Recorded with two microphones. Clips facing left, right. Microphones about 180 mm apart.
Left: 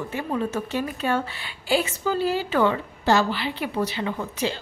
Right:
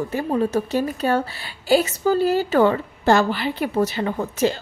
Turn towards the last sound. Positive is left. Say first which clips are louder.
# right 6 dB
turn(degrees=-45)  # may be behind; listen again after turning